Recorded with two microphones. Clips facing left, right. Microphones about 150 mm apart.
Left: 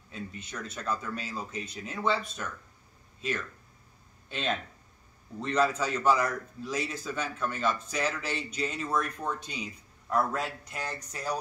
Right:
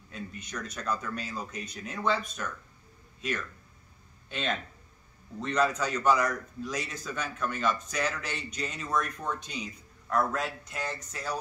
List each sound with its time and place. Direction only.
0.1 s a man's voice: 5° left (ahead or behind)
1.5 s speech: 25° left (ahead or behind)
1.9 s a man's voice: 5° left (ahead or behind)
4.3 s a man's voice: centre (ahead or behind)